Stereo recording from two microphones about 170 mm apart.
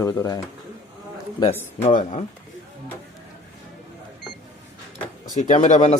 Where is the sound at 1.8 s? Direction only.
45° left (ahead or behind).